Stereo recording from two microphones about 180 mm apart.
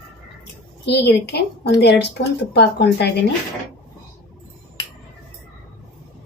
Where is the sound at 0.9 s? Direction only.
65° left (ahead or behind).